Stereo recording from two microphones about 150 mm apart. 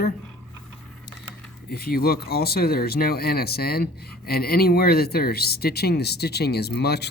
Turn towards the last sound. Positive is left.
turn(degrees=90)